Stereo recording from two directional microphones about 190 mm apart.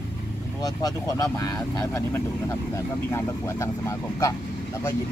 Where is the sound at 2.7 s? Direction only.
15° left (ahead or behind).